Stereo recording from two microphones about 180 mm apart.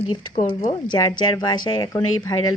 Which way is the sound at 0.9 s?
25° left (ahead or behind).